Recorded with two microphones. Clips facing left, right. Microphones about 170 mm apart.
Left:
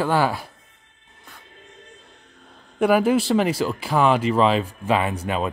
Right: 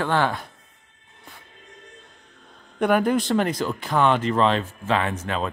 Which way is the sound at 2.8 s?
5° left (ahead or behind).